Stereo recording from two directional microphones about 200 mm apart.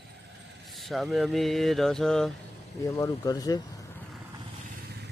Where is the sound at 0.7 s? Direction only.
Centre (ahead or behind).